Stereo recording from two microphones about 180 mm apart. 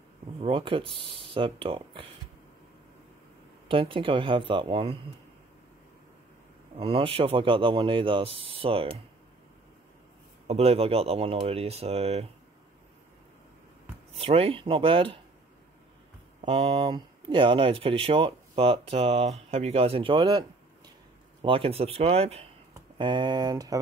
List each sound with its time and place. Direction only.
0.4 s speech: 30° right (ahead or behind)
3.6 s speech: 30° right (ahead or behind)
6.8 s speech: 30° right (ahead or behind)
10.4 s speech: 35° right (ahead or behind)
14.1 s speech: 35° right (ahead or behind)
16.3 s speech: 35° right (ahead or behind); by 23.8 s 20° right (ahead or behind)